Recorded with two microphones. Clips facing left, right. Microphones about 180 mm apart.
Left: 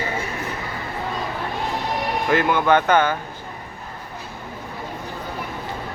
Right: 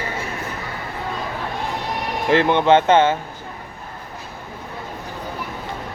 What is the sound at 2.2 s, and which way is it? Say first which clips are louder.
Speech: right 4 dB; 25° right (ahead or behind).